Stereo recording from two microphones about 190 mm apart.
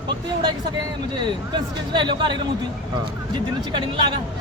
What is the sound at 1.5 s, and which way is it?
Speech, 25° right (ahead or behind).